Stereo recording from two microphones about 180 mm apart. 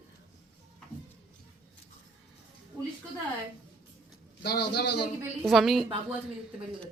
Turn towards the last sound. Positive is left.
turn(degrees=0)  # may be behind; listen again after turning